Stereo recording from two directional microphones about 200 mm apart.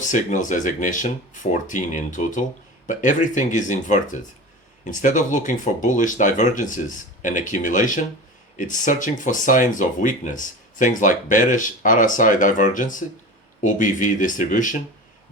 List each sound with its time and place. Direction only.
0.0 s speech: 40° left (ahead or behind)